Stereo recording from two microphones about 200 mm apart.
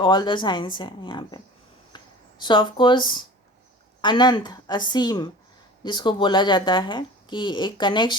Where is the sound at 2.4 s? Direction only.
25° left (ahead or behind).